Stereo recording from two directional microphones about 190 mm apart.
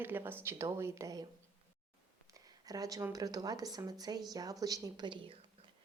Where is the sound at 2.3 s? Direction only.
20° right (ahead or behind).